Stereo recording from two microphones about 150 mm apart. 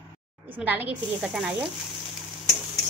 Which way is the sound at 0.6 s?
10° right (ahead or behind).